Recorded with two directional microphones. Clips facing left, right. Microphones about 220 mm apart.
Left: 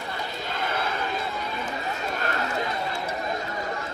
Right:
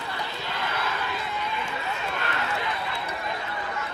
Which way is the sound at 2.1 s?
40° left (ahead or behind).